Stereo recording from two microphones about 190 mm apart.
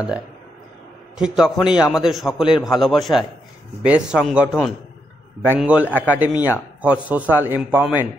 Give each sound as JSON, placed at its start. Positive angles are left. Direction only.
{"t": 1.1, "sound": "a man's voice", "side_deg": -5}